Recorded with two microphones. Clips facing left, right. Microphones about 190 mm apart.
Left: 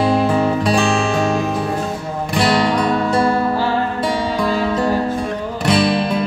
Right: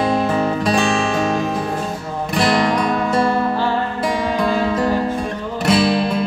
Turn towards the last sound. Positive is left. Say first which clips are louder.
# even
turn(degrees=0)  # may be behind; listen again after turning